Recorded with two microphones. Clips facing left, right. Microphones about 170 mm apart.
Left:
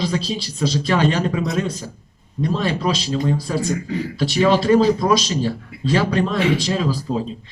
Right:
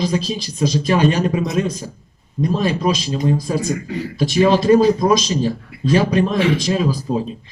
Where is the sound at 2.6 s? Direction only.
20° right (ahead or behind).